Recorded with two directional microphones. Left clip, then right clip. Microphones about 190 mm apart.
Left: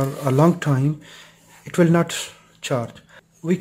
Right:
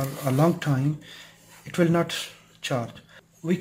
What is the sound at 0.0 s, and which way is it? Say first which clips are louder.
Speech: left 5 dB; 45° left (ahead or behind).